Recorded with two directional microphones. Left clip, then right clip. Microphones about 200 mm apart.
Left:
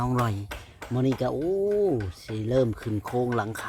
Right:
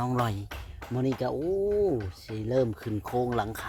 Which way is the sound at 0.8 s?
60° left (ahead or behind).